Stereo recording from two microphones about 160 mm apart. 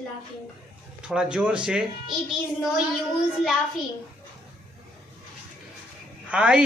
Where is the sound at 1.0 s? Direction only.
5° right (ahead or behind).